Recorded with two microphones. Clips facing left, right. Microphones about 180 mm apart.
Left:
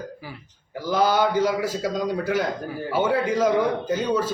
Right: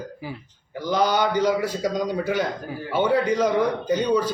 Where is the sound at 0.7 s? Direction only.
5° left (ahead or behind).